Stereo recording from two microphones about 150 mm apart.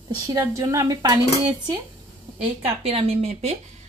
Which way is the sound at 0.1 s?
25° right (ahead or behind).